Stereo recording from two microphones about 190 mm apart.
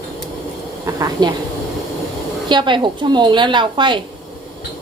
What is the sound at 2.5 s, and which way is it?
A woman's voice, 25° right (ahead or behind).